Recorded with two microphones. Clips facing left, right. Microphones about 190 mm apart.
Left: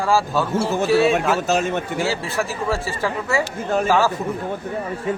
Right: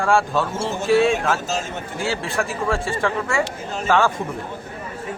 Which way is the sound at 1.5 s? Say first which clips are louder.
Left 7 dB; 65° left (ahead or behind).